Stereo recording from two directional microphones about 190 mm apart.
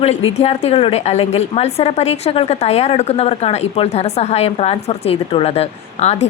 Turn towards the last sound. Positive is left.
turn(degrees=35)  # may be behind; listen again after turning